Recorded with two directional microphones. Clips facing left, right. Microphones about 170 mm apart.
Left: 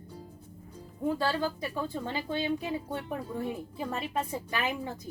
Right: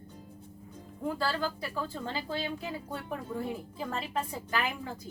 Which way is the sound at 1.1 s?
20° left (ahead or behind).